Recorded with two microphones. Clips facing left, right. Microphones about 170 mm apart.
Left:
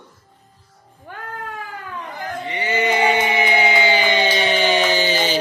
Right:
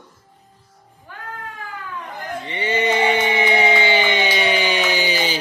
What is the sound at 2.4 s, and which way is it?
Music, 30° right (ahead or behind).